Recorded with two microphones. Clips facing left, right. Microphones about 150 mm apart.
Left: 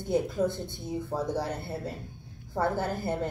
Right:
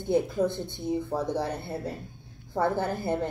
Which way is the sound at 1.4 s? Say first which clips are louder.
Right 2 dB; 15° right (ahead or behind).